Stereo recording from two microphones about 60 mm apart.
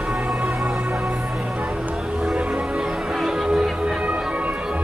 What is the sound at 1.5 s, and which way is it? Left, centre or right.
Music, right.